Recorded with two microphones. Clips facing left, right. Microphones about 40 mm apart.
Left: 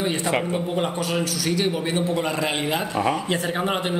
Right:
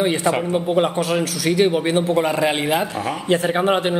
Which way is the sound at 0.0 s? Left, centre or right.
Right.